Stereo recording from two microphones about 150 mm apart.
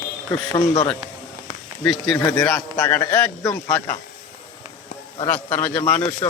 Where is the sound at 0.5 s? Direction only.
20° left (ahead or behind).